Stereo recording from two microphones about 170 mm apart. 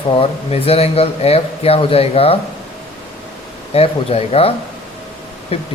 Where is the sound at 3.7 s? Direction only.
35° left (ahead or behind).